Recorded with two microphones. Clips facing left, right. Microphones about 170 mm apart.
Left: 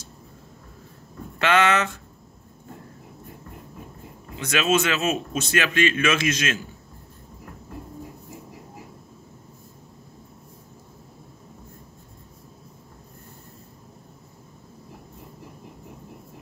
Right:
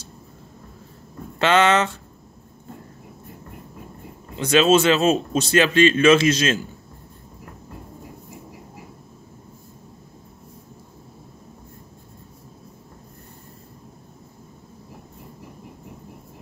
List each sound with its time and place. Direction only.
1.4 s speech: 30° right (ahead or behind)
4.4 s a man's voice: 30° right (ahead or behind)